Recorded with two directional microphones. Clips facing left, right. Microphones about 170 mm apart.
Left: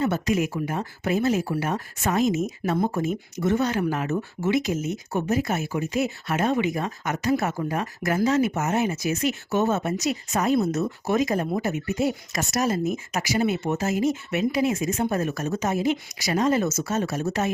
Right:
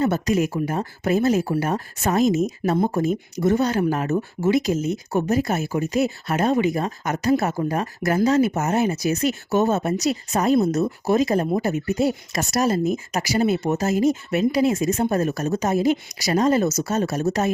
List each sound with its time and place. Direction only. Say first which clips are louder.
0.0 s speech: right 3 dB; 40° right (ahead or behind)